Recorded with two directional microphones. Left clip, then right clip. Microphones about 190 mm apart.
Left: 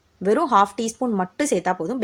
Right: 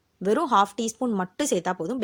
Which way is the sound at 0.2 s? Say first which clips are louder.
Left 4 dB; 40° right (ahead or behind).